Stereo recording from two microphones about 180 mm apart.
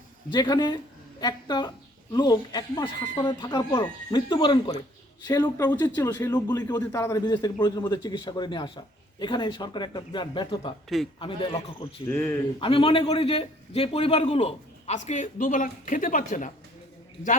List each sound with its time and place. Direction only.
0.3 s a man's voice: 25° left (ahead or behind)
10.8 s a man's voice: centre (ahead or behind)
11.2 s a man's voice: 25° left (ahead or behind)
12.0 s speech: 10° left (ahead or behind)
12.5 s a man's voice: 30° left (ahead or behind); by 16.5 s 45° left (ahead or behind)